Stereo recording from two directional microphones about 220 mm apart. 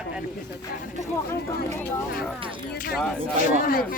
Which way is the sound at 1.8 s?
40° left (ahead or behind).